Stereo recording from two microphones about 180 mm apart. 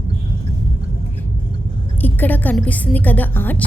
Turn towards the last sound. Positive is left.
turn(degrees=10)  # may be behind; listen again after turning